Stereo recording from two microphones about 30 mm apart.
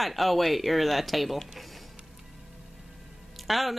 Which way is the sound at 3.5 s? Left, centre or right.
Centre.